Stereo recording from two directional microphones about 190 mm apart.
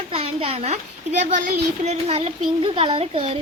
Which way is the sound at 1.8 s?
35° right (ahead or behind).